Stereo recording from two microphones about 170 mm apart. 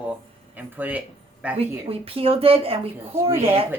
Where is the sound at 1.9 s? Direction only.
35° right (ahead or behind).